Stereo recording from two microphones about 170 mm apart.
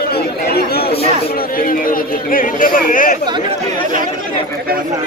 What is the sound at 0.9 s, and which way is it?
Chatter, 35° left (ahead or behind).